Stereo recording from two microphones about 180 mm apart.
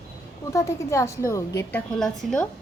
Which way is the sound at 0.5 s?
15° left (ahead or behind).